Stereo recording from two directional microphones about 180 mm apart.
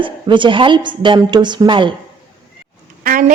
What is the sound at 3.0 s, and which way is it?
Speech, 50° right (ahead or behind).